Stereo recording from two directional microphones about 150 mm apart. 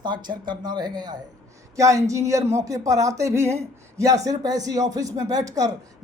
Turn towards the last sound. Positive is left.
turn(degrees=-25)  # may be behind; listen again after turning